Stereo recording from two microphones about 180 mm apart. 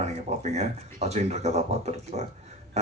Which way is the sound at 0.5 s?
40° right (ahead or behind).